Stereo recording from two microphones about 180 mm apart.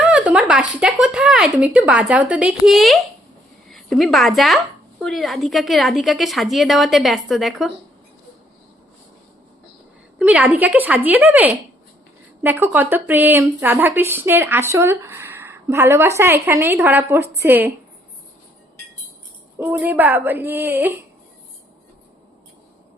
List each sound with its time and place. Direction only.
0.0 s a sound: 5° right (ahead or behind)
0.8 s speech: 5° right (ahead or behind)
10.2 s speech: 10° right (ahead or behind)
19.5 s speech: 10° right (ahead or behind)